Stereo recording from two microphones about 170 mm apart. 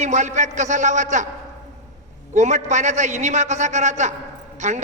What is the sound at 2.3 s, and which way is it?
A man's voice, 45° right (ahead or behind).